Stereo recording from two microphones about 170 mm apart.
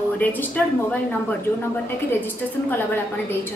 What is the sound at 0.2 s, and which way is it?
Speech, 10° left (ahead or behind).